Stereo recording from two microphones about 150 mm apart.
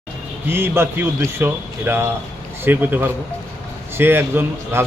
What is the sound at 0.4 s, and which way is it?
Speech, 15° right (ahead or behind).